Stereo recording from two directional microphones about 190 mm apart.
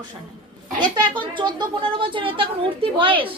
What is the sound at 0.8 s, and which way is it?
Speech, 25° right (ahead or behind).